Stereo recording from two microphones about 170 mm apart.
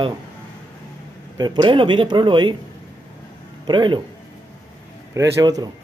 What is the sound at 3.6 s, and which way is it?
Speech, 25° right (ahead or behind).